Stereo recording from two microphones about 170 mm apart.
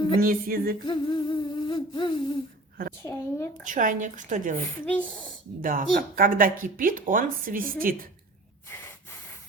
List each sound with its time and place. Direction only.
0.2 s a sound: 55° right (ahead or behind)
0.9 s humming: 30° left (ahead or behind)
3.0 s speech: 15° left (ahead or behind)
3.6 s speech: 50° right (ahead or behind)
4.9 s speech: 5° left (ahead or behind)
5.6 s speech: 55° right (ahead or behind)